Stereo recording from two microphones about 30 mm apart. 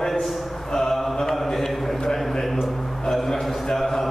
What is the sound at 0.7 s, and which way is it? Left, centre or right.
Mantra, centre.